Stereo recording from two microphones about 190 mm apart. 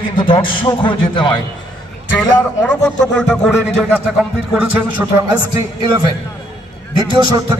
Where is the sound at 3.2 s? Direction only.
Centre (ahead or behind).